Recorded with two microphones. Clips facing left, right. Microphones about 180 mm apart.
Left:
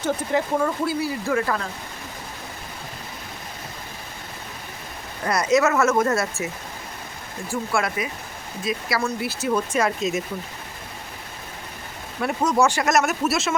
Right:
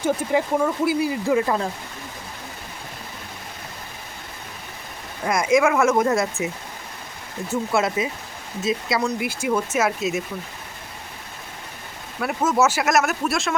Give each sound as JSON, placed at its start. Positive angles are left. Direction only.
{"t": 0.0, "sound": "speech", "side_deg": -10}
{"t": 5.2, "sound": "speech", "side_deg": -10}
{"t": 12.2, "sound": "speech", "side_deg": -5}